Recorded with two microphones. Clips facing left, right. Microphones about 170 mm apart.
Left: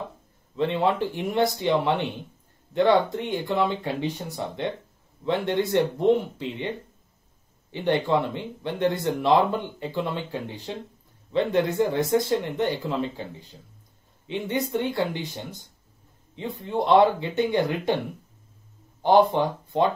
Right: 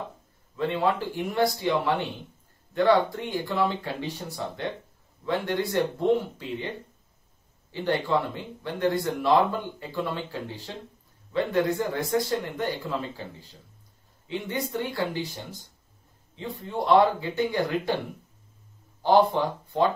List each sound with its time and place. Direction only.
0.6 s speech: 25° left (ahead or behind)
7.7 s speech: 20° left (ahead or behind)
14.2 s speech: 20° left (ahead or behind)
16.3 s speech: 20° left (ahead or behind)
19.0 s speech: 20° left (ahead or behind)